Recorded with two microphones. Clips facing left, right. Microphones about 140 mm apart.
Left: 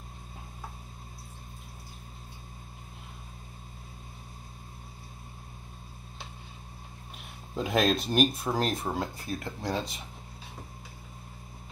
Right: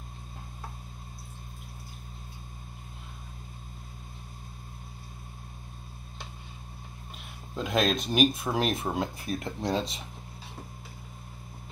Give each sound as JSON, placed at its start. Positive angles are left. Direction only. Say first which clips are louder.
{"t": 7.5, "sound": "speech", "louder": "left 1 dB", "side_deg": 5}
{"t": 9.3, "sound": "speech", "louder": "right 4 dB", "side_deg": -25}